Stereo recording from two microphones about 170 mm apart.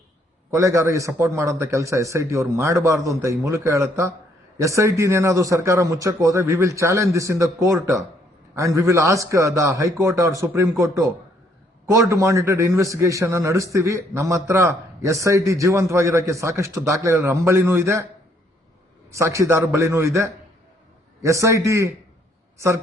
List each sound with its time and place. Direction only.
0.5 s a man's voice: 15° right (ahead or behind)
19.1 s a man's voice: 15° right (ahead or behind)